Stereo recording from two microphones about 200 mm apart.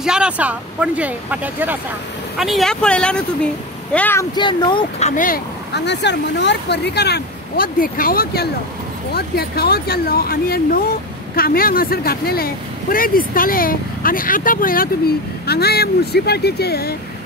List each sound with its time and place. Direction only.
0.0 s speech: 5° right (ahead or behind)
4.4 s speech: 25° left (ahead or behind); by 16.9 s 50° left (ahead or behind)